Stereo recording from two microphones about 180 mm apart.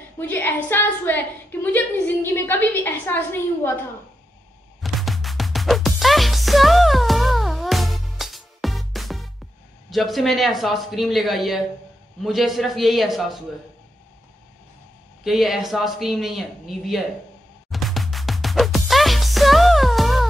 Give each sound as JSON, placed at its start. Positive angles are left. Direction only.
{"t": 0.2, "sound": "a woman's voice", "side_deg": 10}
{"t": 4.8, "sound": "music", "side_deg": 0}
{"t": 9.8, "sound": "speech", "side_deg": 0}
{"t": 15.2, "sound": "speech", "side_deg": 0}
{"t": 17.6, "sound": "music", "side_deg": 0}